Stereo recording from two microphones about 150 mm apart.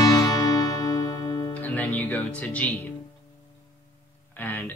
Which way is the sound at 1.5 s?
10° left (ahead or behind).